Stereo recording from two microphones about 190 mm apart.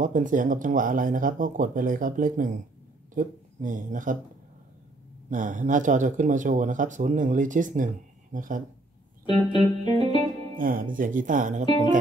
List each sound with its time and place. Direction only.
0.0 s speech: 45° right (ahead or behind)
5.3 s speech: 40° right (ahead or behind)
9.2 s music: 25° left (ahead or behind)
10.6 s speech: 45° right (ahead or behind)
11.6 s music: 25° left (ahead or behind)